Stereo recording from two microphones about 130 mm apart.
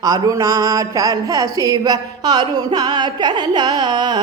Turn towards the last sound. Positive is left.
turn(degrees=-35)  # may be behind; listen again after turning